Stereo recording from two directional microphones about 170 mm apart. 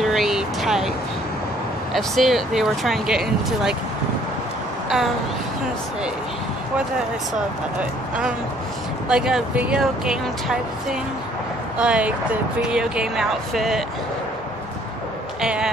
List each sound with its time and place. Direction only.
0.0 s vehicle: centre (ahead or behind)
2.0 s speech: centre (ahead or behind)
9.1 s speech: 5° right (ahead or behind)
15.4 s speech: 5° right (ahead or behind)